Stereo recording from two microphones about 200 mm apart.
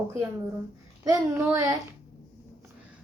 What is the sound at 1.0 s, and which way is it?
Speech, 15° right (ahead or behind).